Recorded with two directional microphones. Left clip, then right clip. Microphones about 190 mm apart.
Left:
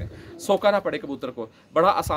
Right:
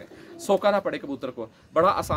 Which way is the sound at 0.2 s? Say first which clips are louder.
Left 1 dB; 15° left (ahead or behind).